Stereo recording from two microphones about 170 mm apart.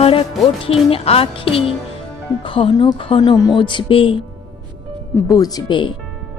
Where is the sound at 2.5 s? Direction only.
30° left (ahead or behind).